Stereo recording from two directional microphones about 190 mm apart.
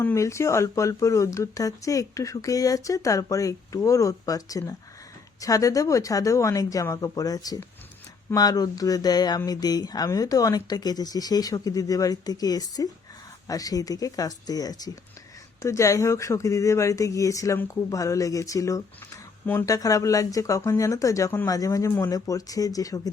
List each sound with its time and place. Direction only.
0.0 s speech: 15° left (ahead or behind)